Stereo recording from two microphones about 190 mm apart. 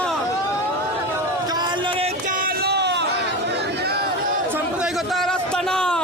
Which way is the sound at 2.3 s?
50° right (ahead or behind).